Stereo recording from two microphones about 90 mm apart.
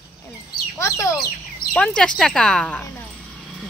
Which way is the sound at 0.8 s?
30° left (ahead or behind).